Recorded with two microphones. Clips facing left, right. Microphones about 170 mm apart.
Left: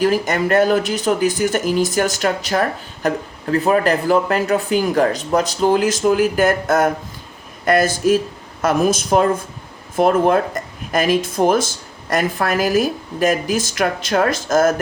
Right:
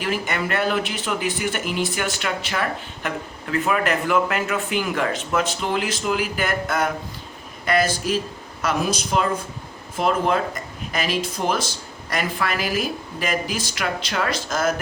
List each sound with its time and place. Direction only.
0.0 s a woman's voice: 40° left (ahead or behind)